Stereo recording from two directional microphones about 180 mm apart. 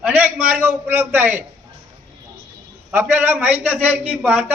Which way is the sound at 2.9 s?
10° right (ahead or behind).